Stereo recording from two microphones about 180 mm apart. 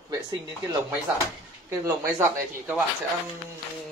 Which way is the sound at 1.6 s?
15° right (ahead or behind).